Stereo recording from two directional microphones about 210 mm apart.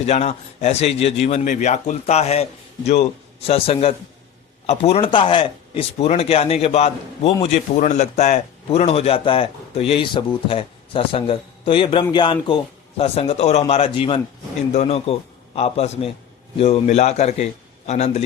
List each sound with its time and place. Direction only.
0.0 s a man's voice: 30° left (ahead or behind)